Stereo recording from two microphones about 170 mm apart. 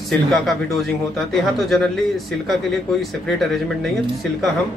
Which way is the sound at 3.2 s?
Centre (ahead or behind).